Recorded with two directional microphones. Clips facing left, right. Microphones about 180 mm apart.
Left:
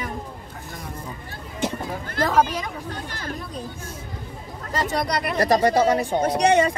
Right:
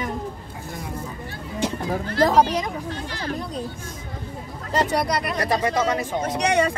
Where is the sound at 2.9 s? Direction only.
45° left (ahead or behind).